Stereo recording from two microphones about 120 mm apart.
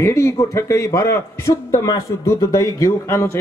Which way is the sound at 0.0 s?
25° left (ahead or behind).